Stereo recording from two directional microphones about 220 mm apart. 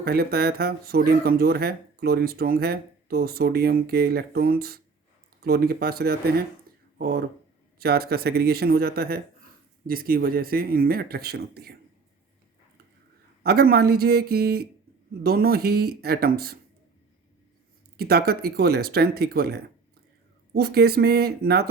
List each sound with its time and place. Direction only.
0.0 s speech: 45° right (ahead or behind)
13.4 s speech: 45° right (ahead or behind)
17.9 s speech: 45° right (ahead or behind)